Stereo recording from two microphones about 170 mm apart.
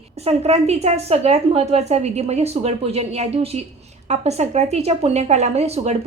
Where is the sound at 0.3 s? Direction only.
40° right (ahead or behind).